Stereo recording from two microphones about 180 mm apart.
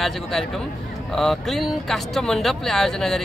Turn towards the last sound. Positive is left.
turn(degrees=0)  # may be behind; listen again after turning